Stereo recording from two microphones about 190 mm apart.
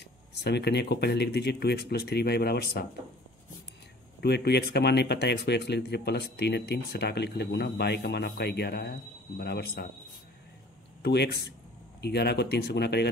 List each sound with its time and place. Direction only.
0.3 s speech: 60° left (ahead or behind)
4.2 s speech: 60° left (ahead or behind)
11.0 s speech: 60° left (ahead or behind)